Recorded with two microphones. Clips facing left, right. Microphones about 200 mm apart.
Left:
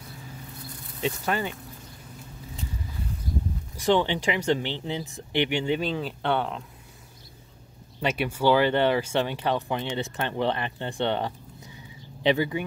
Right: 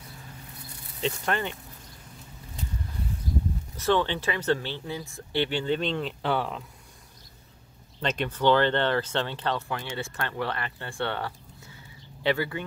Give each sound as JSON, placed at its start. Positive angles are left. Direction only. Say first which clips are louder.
{"t": 1.0, "sound": "speech", "louder": "left 1 dB", "side_deg": 5}
{"t": 3.7, "sound": "speech", "louder": "left 2 dB", "side_deg": 15}
{"t": 8.0, "sound": "speech", "louder": "left 1 dB", "side_deg": 10}